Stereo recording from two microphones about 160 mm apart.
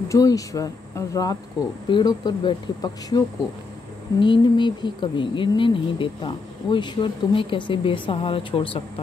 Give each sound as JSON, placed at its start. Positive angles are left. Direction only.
{"t": 0.1, "sound": "speech", "side_deg": 20}
{"t": 4.2, "sound": "speech", "side_deg": 30}